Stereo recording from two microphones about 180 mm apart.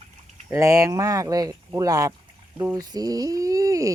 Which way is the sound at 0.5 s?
15° right (ahead or behind).